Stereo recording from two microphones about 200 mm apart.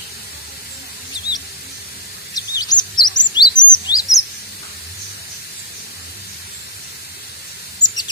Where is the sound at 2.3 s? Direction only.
20° left (ahead or behind).